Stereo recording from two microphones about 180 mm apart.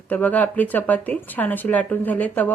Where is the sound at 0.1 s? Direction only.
10° left (ahead or behind).